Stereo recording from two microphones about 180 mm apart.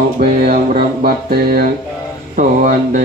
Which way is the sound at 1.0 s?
55° right (ahead or behind).